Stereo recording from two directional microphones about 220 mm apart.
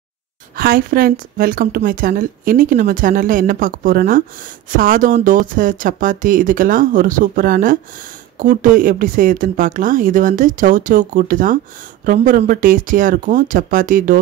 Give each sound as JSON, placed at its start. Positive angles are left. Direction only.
{"t": 0.6, "sound": "a woman's voice", "side_deg": -40}